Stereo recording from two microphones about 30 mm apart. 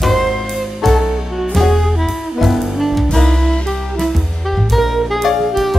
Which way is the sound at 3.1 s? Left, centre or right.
Centre.